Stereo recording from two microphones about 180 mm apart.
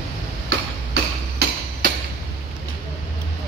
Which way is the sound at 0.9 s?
65° right (ahead or behind).